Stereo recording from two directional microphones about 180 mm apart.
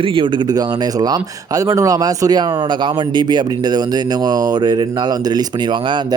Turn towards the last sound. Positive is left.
turn(degrees=-25)  # may be behind; listen again after turning